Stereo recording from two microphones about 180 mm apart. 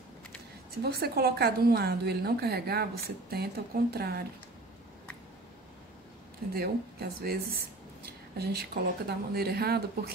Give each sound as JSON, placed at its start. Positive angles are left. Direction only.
{"t": 0.8, "sound": "a woman's voice", "side_deg": -60}
{"t": 6.5, "sound": "a woman's voice", "side_deg": -60}